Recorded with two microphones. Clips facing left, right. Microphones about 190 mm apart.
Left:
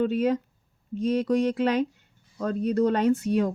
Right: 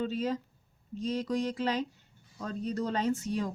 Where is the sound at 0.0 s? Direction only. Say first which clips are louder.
Left 8 dB; 60° left (ahead or behind).